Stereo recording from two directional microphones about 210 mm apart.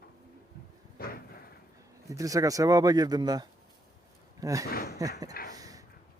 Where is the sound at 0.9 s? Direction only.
45° left (ahead or behind).